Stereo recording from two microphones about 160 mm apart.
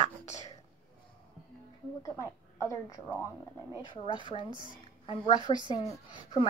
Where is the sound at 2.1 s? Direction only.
20° left (ahead or behind).